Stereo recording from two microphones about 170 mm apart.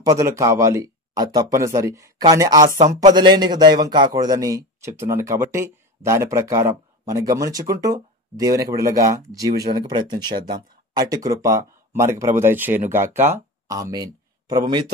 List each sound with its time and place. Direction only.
0.0 s speech: 20° right (ahead or behind)
2.8 s a man's voice: 40° right (ahead or behind)
3.1 s speech: 25° right (ahead or behind)